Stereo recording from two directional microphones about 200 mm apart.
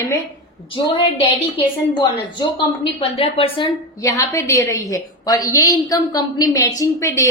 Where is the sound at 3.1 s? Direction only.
30° left (ahead or behind).